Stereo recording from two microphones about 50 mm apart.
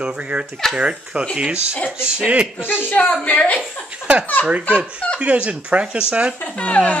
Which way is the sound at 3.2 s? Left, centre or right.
Left.